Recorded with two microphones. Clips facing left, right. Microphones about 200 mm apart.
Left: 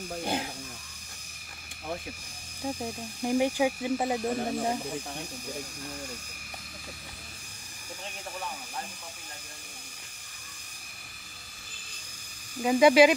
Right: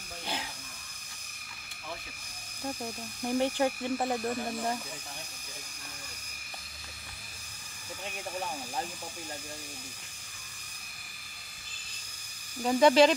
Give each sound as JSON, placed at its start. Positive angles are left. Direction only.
{"t": 0.2, "sound": "hiss", "side_deg": 50}
{"t": 2.6, "sound": "speech", "side_deg": 15}
{"t": 12.6, "sound": "speech", "side_deg": 10}